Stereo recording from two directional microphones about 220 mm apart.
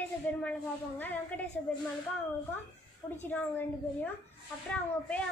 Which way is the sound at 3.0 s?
20° left (ahead or behind).